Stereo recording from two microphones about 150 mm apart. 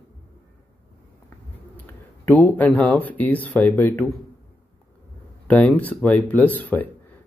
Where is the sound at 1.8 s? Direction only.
10° left (ahead or behind).